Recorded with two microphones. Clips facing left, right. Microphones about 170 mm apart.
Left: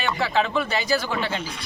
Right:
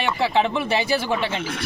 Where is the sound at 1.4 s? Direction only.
90° right.